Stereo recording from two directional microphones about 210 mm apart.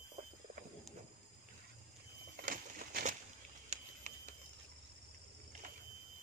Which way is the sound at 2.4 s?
40° right (ahead or behind).